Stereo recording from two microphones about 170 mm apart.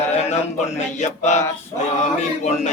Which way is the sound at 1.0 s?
45° left (ahead or behind).